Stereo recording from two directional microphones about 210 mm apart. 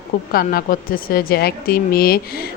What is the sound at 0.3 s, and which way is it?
Speech, 45° left (ahead or behind).